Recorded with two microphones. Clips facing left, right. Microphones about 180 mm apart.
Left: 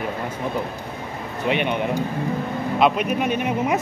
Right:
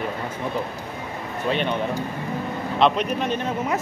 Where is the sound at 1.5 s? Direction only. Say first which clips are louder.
Left 2 dB; 15° left (ahead or behind).